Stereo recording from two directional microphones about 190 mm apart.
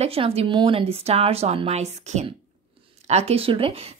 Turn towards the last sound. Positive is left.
turn(degrees=-30)  # may be behind; listen again after turning